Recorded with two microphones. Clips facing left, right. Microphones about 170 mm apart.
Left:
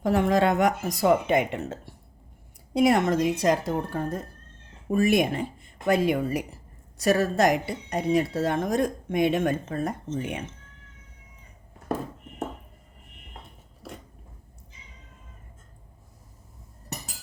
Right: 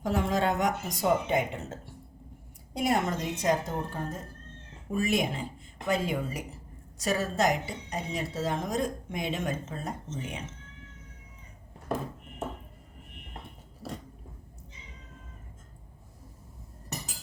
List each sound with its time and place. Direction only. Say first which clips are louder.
0.0 s a woman's voice: left 6 dB; 65° left (ahead or behind)